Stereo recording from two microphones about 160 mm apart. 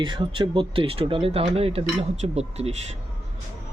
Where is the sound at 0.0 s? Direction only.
30° right (ahead or behind).